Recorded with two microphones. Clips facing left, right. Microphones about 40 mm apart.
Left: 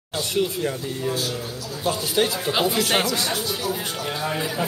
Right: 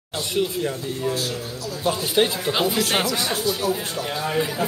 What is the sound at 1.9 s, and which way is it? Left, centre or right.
Speech, centre.